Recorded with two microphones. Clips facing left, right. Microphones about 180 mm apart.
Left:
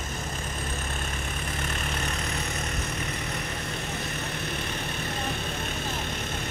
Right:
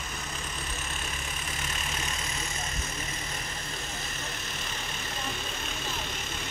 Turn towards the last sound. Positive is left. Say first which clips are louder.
# left 5 dB
turn(degrees=60)  # may be behind; listen again after turning